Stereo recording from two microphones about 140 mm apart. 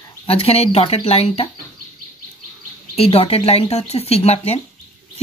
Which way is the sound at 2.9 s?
45° left (ahead or behind).